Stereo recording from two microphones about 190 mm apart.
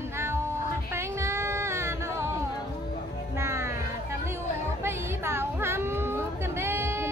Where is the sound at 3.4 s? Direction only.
15° right (ahead or behind).